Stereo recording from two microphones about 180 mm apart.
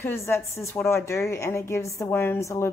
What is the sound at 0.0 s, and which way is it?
A woman's voice, 15° left (ahead or behind).